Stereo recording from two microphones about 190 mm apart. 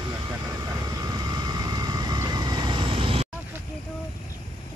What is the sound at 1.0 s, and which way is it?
Vehicle, 20° right (ahead or behind).